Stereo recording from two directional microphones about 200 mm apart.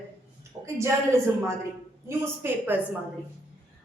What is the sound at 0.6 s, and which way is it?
A woman's voice, 15° right (ahead or behind).